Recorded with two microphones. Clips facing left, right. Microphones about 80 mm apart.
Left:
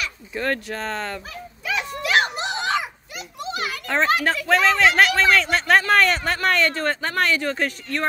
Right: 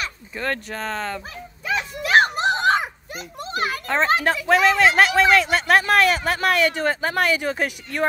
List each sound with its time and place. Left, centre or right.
0.3 s speech: centre
1.7 s a sound: right
3.4 s a child's voice: right
3.8 s speech: centre